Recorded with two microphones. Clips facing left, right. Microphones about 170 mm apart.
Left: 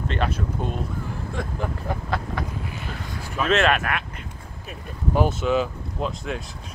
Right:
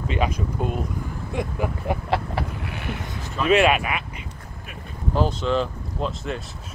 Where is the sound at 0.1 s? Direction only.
5° right (ahead or behind).